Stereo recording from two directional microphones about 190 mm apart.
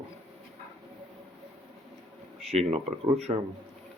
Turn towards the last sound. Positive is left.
turn(degrees=-35)  # may be behind; listen again after turning